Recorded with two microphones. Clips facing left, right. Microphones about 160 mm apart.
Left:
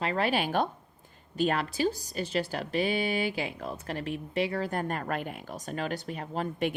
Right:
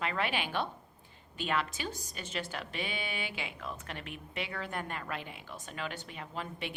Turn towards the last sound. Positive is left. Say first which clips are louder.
# left 9 dB
turn(degrees=45)  # may be behind; listen again after turning